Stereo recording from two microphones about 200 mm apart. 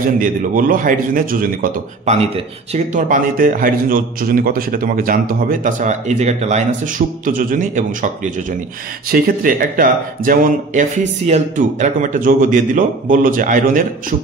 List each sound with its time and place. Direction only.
0.2 s a man's voice: 45° right (ahead or behind)